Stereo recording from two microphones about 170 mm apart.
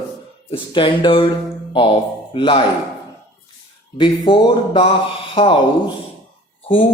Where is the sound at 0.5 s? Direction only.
30° left (ahead or behind).